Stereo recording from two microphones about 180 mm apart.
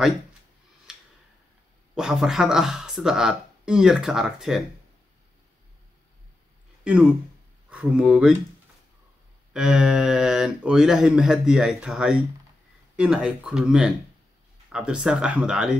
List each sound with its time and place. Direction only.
2.0 s speech: 5° right (ahead or behind)
6.8 s speech: 5° right (ahead or behind)
9.5 s speech: 5° right (ahead or behind)